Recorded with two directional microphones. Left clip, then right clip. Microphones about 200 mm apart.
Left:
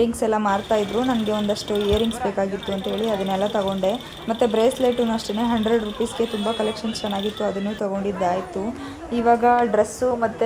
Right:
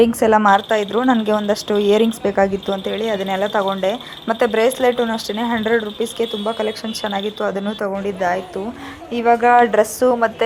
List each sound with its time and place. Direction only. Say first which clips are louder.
0.2 s speech: right 8 dB; 20° right (ahead or behind)